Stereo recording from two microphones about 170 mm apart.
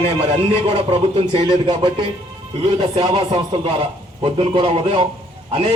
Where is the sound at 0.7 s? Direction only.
35° right (ahead or behind).